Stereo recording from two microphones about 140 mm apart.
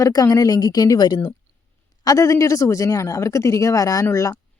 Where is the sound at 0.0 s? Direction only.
25° left (ahead or behind).